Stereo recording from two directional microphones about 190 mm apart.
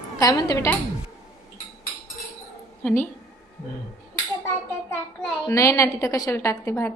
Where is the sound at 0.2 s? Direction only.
20° left (ahead or behind).